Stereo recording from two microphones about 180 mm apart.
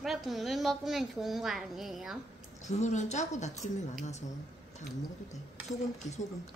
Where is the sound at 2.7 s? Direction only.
40° left (ahead or behind).